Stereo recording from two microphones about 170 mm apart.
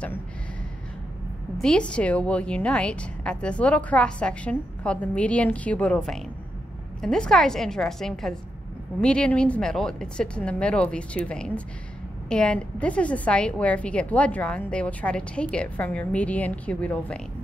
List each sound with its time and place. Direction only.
1.6 s a woman's voice: 5° left (ahead or behind)